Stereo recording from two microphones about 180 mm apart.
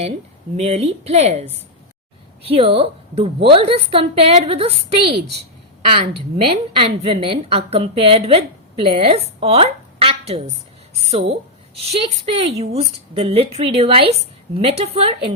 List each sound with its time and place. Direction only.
0.5 s a woman's voice: 35° right (ahead or behind)
6.7 s a woman's voice: 30° right (ahead or behind)